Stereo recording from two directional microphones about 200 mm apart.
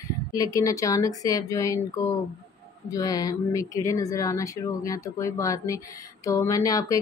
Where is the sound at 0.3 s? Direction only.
15° left (ahead or behind).